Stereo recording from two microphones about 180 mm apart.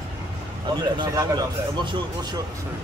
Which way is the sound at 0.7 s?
25° right (ahead or behind).